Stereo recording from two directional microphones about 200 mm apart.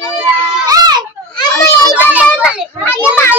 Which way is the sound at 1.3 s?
20° left (ahead or behind).